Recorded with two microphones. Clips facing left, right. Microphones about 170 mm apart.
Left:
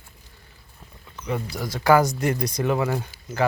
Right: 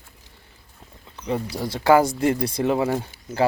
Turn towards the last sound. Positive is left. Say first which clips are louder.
# right 2 dB
turn(degrees=-25)  # may be behind; listen again after turning